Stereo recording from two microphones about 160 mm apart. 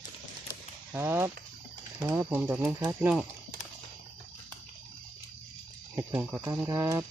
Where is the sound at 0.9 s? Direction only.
15° right (ahead or behind).